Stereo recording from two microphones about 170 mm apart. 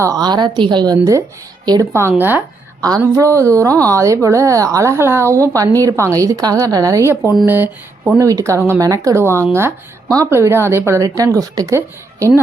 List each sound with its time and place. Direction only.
0.0 s speech: 20° right (ahead or behind)